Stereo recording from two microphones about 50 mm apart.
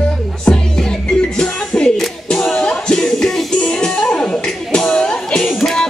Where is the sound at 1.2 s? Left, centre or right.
Centre.